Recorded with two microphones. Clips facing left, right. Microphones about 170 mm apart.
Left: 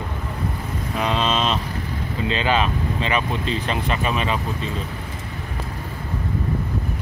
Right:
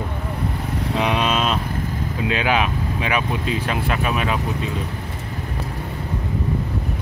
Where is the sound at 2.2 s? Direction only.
10° right (ahead or behind).